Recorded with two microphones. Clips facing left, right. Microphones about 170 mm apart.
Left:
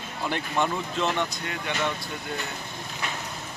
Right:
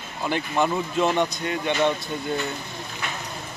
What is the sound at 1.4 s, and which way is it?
Speech, 25° right (ahead or behind).